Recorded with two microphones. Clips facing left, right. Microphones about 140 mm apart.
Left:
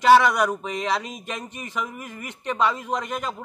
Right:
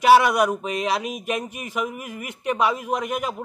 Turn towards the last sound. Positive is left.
turn(degrees=-10)  # may be behind; listen again after turning